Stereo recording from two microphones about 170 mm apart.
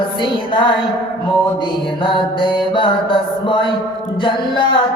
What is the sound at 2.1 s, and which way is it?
Music, 30° left (ahead or behind).